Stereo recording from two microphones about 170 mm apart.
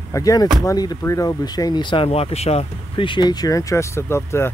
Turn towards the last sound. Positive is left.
turn(degrees=15)  # may be behind; listen again after turning